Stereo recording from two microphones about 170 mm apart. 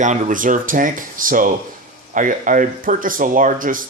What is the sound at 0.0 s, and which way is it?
Speech, 50° right (ahead or behind).